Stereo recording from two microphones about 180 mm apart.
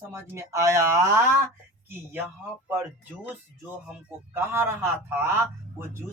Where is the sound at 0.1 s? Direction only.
15° right (ahead or behind).